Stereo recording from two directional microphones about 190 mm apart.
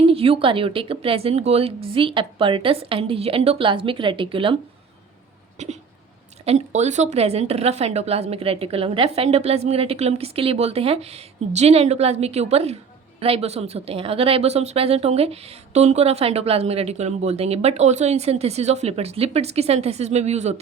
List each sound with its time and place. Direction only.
0.0 s a woman's voice: 30° right (ahead or behind)
5.6 s a woman's voice: 35° right (ahead or behind)